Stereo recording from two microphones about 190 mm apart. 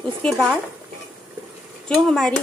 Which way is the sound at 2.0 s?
Centre (ahead or behind).